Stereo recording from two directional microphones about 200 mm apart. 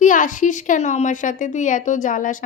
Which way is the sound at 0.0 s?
40° left (ahead or behind).